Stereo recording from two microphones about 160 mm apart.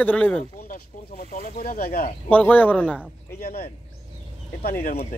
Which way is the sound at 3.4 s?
65° left (ahead or behind).